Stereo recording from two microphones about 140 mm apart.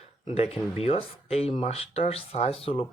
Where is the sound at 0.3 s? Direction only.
45° left (ahead or behind).